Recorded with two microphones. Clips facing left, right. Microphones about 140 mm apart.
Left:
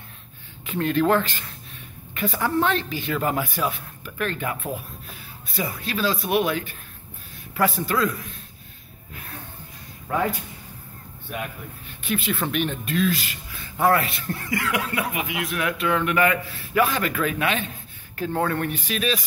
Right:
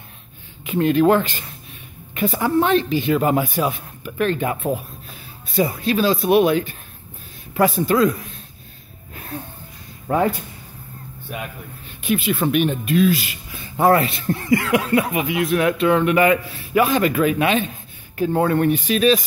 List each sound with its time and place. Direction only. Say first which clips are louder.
0.7 s speech: right 5 dB; 15° right (ahead or behind)
9.1 s a sound: right 8 dB; 30° right (ahead or behind)
10.1 s speech: right 5 dB; 35° right (ahead or behind)
12.0 s speech: right 6 dB; 10° right (ahead or behind); by 19.2 s 25° right (ahead or behind)